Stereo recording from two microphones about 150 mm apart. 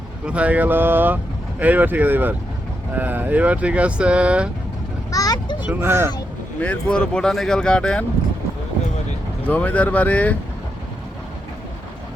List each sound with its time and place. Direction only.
0.3 s speech: 10° right (ahead or behind)
5.1 s a child's voice: 25° left (ahead or behind)
5.6 s speech: 15° right (ahead or behind)
6.6 s speech: 10° left (ahead or behind)
9.5 s speech: 10° left (ahead or behind)